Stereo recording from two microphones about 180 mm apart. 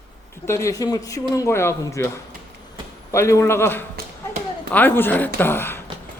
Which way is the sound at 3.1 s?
15° left (ahead or behind).